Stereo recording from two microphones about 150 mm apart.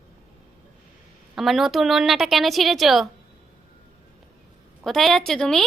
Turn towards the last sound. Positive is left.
turn(degrees=5)  # may be behind; listen again after turning